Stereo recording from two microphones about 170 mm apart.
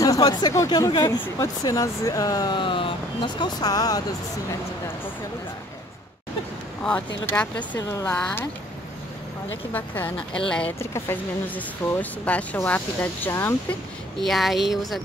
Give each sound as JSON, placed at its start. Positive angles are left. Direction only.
{"t": 0.2, "sound": "speech", "side_deg": 25}
{"t": 7.2, "sound": "speech", "side_deg": 10}
{"t": 9.7, "sound": "speech", "side_deg": 10}
{"t": 14.2, "sound": "speech", "side_deg": 0}